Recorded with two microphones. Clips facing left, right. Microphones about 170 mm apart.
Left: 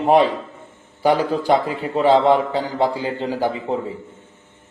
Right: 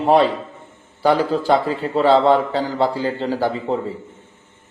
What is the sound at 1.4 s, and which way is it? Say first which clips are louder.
A man's voice: right 1 dB; 15° left (ahead or behind).